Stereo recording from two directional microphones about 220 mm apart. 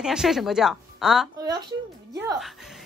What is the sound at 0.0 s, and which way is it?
A woman's voice, centre (ahead or behind).